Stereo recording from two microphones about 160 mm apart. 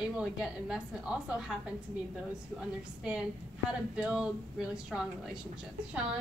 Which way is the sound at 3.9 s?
5° right (ahead or behind).